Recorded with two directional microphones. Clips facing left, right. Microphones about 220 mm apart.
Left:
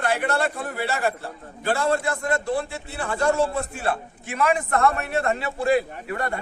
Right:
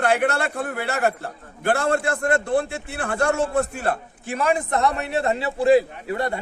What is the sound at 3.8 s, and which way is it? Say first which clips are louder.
Speech: right 1 dB; 35° right (ahead or behind).